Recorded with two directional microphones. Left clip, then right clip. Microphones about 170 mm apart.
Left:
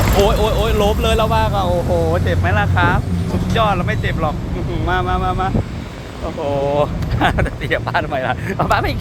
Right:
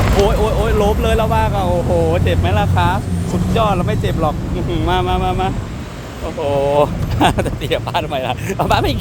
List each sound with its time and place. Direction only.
0.2 s speech: 5° right (ahead or behind); by 2.3 s 20° right (ahead or behind)
2.4 s speech: 35° right (ahead or behind)
6.4 s speech: 55° right (ahead or behind)